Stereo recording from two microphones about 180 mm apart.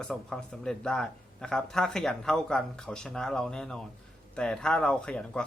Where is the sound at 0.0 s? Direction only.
5° left (ahead or behind).